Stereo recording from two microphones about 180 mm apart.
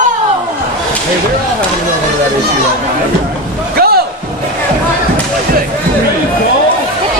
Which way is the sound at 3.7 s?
60° right (ahead or behind).